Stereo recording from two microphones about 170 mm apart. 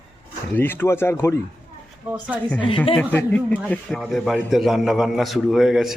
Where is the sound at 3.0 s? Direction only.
10° left (ahead or behind).